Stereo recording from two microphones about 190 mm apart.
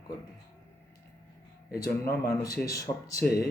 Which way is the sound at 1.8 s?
15° left (ahead or behind).